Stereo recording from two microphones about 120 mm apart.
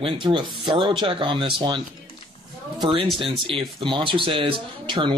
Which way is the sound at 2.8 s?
45° right (ahead or behind).